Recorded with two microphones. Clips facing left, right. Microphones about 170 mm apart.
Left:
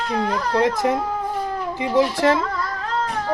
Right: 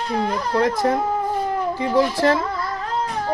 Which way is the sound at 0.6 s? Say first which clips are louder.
Even; 25° left (ahead or behind).